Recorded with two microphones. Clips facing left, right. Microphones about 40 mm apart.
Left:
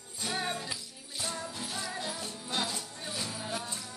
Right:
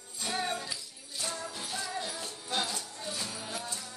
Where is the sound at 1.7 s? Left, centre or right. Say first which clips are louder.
Right 2 dB; centre.